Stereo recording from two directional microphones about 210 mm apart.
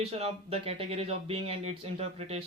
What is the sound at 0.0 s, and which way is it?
Speech, 30° right (ahead or behind).